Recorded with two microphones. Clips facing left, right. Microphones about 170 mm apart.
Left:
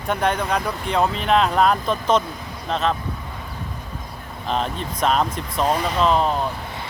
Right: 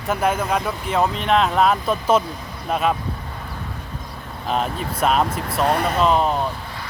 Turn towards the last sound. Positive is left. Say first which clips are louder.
# right 1 dB
turn(degrees=-5)  # may be behind; listen again after turning